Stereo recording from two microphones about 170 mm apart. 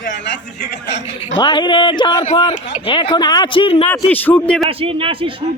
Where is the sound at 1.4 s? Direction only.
25° left (ahead or behind).